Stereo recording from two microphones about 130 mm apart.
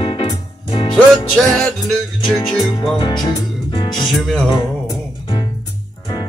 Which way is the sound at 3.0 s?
35° left (ahead or behind).